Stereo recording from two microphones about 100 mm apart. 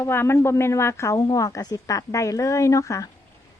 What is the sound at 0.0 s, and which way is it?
A woman's voice, 25° left (ahead or behind).